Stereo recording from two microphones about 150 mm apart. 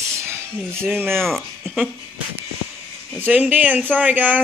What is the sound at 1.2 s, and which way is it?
Speech, centre (ahead or behind).